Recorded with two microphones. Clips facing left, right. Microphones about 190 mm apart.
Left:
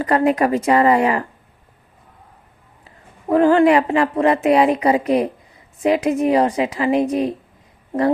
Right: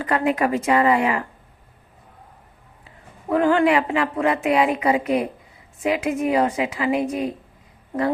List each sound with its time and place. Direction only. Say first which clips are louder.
0.0 s a woman's voice: left 4 dB; 40° left (ahead or behind)
3.2 s a woman's voice: left 5 dB; 40° left (ahead or behind)